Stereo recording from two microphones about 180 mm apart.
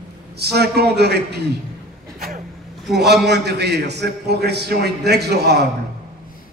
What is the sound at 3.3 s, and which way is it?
A man's voice, 70° right (ahead or behind).